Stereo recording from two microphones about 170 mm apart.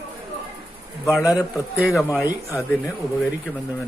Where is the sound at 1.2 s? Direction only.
20° left (ahead or behind).